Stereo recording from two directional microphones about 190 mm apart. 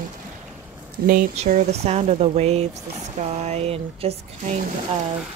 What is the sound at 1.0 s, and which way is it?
Speech, 50° right (ahead or behind).